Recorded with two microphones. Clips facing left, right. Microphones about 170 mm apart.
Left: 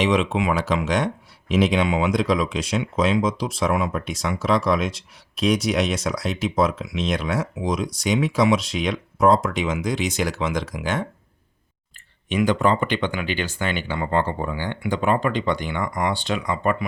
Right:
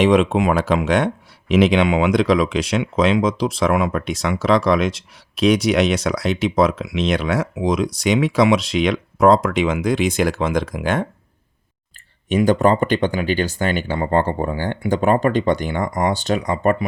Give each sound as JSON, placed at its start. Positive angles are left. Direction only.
{"t": 0.0, "sound": "speech", "side_deg": -50}
{"t": 5.3, "sound": "speech", "side_deg": -75}
{"t": 12.3, "sound": "speech", "side_deg": -40}